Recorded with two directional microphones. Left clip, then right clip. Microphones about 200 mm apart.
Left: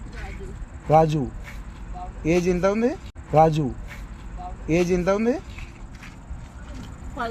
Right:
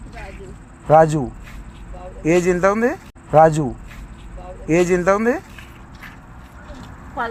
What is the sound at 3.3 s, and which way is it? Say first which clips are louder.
Speech: right 5 dB; 10° right (ahead or behind).